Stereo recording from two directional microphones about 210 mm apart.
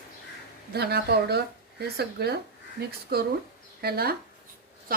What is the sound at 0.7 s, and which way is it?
A woman's voice, 50° right (ahead or behind).